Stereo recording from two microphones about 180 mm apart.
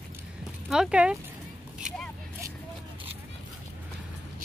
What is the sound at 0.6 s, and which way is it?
Speech, 5° right (ahead or behind).